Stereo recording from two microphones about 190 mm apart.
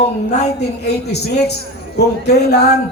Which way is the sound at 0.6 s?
60° left (ahead or behind).